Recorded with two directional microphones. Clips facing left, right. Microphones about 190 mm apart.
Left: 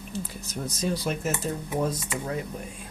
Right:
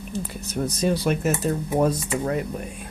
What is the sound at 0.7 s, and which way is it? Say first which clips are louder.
Speech: right 5 dB; 65° right (ahead or behind).